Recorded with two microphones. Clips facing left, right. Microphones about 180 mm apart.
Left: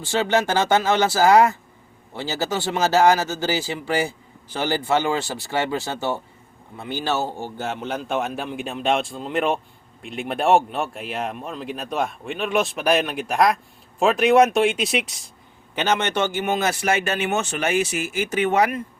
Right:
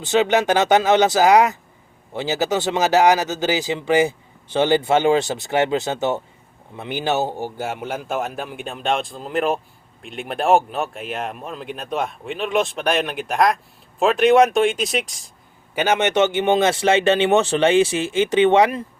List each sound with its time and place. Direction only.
0.0 s a man's voice: 20° right (ahead or behind); by 15.3 s centre (ahead or behind)
15.7 s a man's voice: 10° right (ahead or behind)